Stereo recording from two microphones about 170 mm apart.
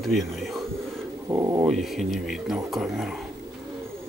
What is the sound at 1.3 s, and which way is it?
Speech, 20° right (ahead or behind).